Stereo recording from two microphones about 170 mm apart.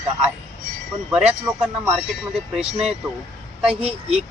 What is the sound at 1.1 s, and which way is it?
Speech, 5° right (ahead or behind).